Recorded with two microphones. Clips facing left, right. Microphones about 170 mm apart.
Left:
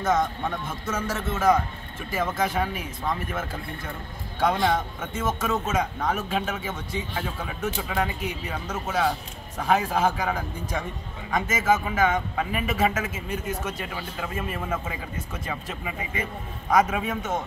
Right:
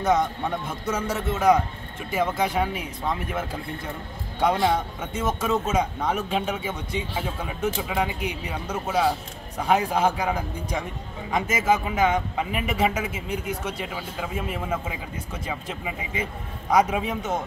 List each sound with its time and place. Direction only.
0.1 s a man's voice: 15° right (ahead or behind)
5.0 s a man's voice: 10° right (ahead or behind)